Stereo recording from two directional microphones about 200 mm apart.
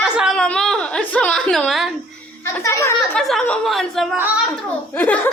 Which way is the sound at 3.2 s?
5° left (ahead or behind).